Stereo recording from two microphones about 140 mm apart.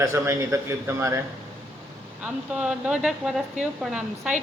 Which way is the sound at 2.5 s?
5° right (ahead or behind).